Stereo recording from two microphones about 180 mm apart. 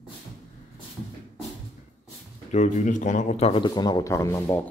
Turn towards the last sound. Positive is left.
turn(degrees=15)  # may be behind; listen again after turning